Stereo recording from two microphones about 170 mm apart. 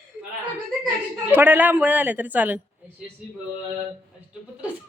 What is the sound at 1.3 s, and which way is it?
A woman's voice, 10° right (ahead or behind).